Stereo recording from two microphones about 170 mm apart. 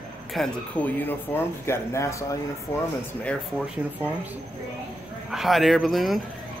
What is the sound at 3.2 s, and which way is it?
Speech, centre (ahead or behind).